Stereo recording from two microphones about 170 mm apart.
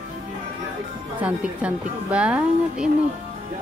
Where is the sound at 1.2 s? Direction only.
10° right (ahead or behind).